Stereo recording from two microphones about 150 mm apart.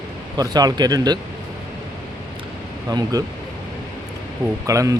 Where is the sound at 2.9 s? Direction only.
25° right (ahead or behind).